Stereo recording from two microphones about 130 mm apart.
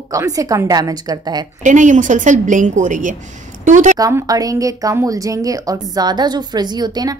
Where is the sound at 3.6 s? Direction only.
75° right (ahead or behind).